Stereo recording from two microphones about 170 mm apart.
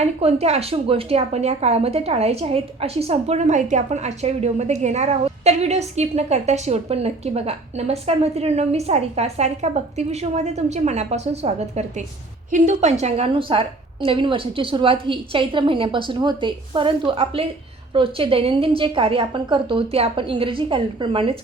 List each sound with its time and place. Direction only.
0.0 s a woman's voice: 35° right (ahead or behind)